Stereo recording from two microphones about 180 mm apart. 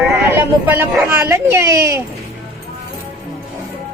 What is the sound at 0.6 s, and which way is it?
Speech, 10° right (ahead or behind).